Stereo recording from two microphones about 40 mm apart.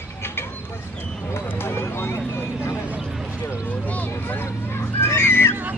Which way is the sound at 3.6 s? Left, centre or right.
Left.